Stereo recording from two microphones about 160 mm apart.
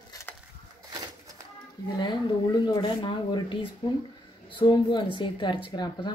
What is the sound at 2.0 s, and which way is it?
Speech, 30° left (ahead or behind).